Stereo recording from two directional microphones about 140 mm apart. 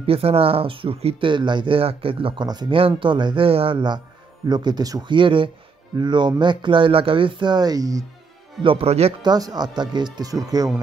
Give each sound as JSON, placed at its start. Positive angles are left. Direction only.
{"t": 0.0, "sound": "speech", "side_deg": -45}
{"t": 8.6, "sound": "speech", "side_deg": -45}
{"t": 9.2, "sound": "speech", "side_deg": -30}